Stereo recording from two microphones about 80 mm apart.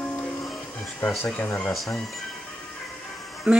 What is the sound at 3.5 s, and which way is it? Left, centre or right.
Speech, centre.